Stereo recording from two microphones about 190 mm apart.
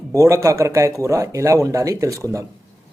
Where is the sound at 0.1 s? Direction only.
15° right (ahead or behind).